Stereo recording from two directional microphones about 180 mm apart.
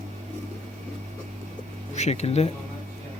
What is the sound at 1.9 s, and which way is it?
Speech, 40° left (ahead or behind).